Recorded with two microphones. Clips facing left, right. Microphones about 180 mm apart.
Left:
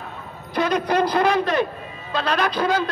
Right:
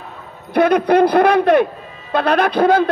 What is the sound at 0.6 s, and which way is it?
Speech, 60° right (ahead or behind).